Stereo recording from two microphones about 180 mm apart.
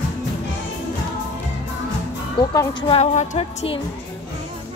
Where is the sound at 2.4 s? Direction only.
25° left (ahead or behind).